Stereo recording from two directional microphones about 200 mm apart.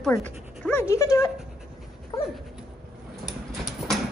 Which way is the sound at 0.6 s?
10° left (ahead or behind).